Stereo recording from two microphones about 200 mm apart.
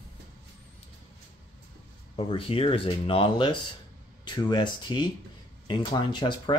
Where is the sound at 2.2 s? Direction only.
25° left (ahead or behind).